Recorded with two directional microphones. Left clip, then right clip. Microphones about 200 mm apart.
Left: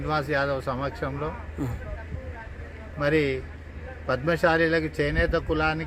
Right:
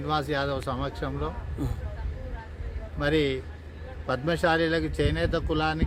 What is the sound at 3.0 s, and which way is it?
Speech, 20° right (ahead or behind).